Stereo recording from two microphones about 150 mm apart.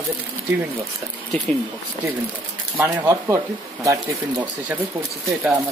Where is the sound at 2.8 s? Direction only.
15° right (ahead or behind).